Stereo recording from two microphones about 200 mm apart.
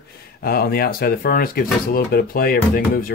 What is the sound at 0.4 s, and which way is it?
Speech, 50° left (ahead or behind).